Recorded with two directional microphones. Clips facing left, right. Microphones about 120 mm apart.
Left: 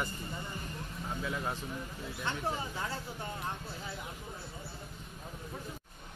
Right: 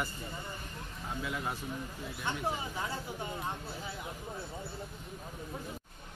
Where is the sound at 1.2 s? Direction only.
5° right (ahead or behind).